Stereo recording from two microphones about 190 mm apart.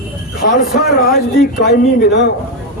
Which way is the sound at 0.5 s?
50° left (ahead or behind).